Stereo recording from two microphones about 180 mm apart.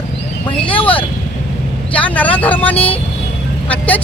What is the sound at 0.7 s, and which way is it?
Speech, 30° left (ahead or behind).